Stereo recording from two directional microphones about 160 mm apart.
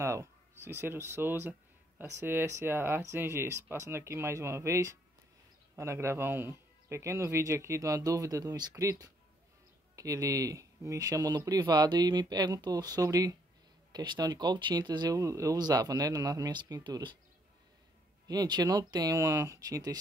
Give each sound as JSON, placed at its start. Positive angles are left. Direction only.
{"t": 0.0, "sound": "speech", "side_deg": -15}
{"t": 18.2, "sound": "speech", "side_deg": -25}